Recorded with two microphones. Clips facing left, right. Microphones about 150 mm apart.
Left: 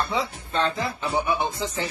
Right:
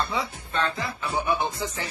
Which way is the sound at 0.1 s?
25° left (ahead or behind).